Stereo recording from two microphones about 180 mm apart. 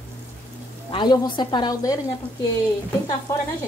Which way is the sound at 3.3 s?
15° left (ahead or behind).